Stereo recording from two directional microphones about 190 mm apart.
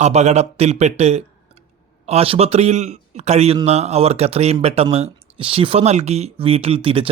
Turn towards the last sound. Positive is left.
turn(degrees=-30)  # may be behind; listen again after turning